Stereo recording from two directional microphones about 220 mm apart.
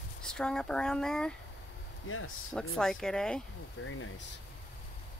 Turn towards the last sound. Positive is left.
turn(degrees=65)  # may be behind; listen again after turning